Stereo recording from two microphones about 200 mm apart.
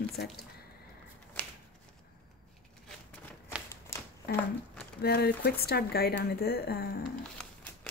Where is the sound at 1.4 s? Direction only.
5° left (ahead or behind).